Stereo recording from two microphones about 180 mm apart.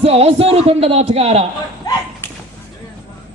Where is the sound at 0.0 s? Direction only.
35° right (ahead or behind).